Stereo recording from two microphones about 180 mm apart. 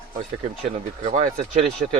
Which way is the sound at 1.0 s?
45° right (ahead or behind).